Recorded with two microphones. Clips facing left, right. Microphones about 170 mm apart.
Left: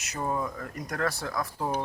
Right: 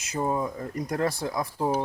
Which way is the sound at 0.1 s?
20° right (ahead or behind).